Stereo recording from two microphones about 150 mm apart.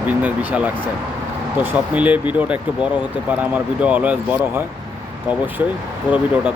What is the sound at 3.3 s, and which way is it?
Speech, 10° right (ahead or behind).